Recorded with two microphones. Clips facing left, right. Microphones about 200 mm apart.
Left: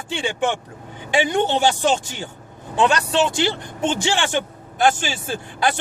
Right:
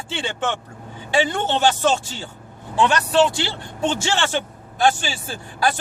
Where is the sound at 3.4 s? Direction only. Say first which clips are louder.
Left 3 dB; 20° left (ahead or behind).